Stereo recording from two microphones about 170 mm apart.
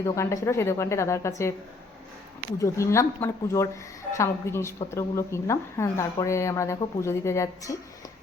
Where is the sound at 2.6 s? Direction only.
15° left (ahead or behind).